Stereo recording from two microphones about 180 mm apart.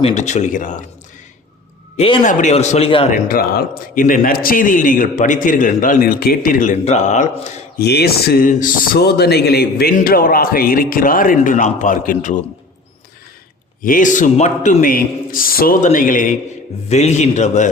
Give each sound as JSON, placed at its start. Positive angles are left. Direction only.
{"t": 0.0, "sound": "a man's voice", "side_deg": 40}
{"t": 2.0, "sound": "speech", "side_deg": 30}
{"t": 2.2, "sound": "a man's voice", "side_deg": 40}
{"t": 3.2, "sound": "speech", "side_deg": 55}
{"t": 7.8, "sound": "speech", "side_deg": 65}
{"t": 13.8, "sound": "a man's voice", "side_deg": 50}